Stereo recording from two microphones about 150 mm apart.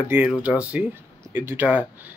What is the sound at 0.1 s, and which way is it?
Speech, 10° right (ahead or behind).